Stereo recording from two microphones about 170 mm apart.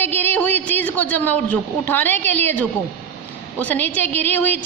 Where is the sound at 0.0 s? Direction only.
10° left (ahead or behind).